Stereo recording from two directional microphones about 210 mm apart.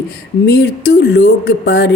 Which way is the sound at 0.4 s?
50° left (ahead or behind).